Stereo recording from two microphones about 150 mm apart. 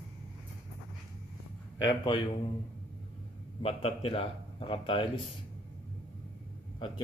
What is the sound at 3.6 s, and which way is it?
A man's voice, 40° left (ahead or behind).